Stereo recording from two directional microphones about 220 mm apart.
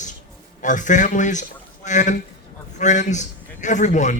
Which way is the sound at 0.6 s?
35° left (ahead or behind).